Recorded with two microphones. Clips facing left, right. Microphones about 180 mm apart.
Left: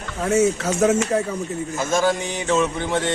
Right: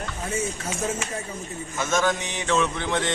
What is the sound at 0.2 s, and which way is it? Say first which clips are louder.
Speech: left 12 dB; 80° left.